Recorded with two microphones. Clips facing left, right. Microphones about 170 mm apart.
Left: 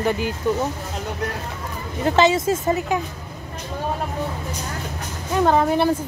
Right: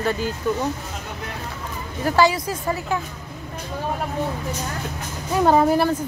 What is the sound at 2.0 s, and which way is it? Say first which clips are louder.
Speech: left 2 dB; 25° left (ahead or behind).